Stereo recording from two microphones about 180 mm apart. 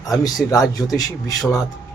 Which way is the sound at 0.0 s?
20° left (ahead or behind).